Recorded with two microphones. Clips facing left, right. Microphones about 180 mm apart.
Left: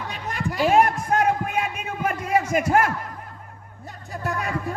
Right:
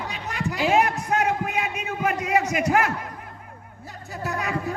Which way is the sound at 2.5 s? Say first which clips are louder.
Left 2 dB; 50° left (ahead or behind).